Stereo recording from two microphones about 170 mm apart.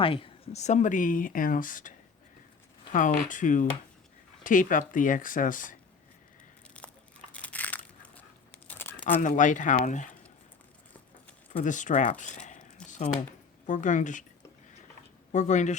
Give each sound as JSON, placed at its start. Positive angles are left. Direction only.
{"t": 0.0, "sound": "speech", "side_deg": 30}
{"t": 7.3, "sound": "crushing", "side_deg": 10}
{"t": 8.7, "sound": "crumpling", "side_deg": 10}
{"t": 9.2, "sound": "speech", "side_deg": 45}
{"t": 11.6, "sound": "speech", "side_deg": 45}
{"t": 12.2, "sound": "crumpling", "side_deg": 45}
{"t": 13.7, "sound": "speech", "side_deg": 50}
{"t": 15.3, "sound": "speech", "side_deg": 45}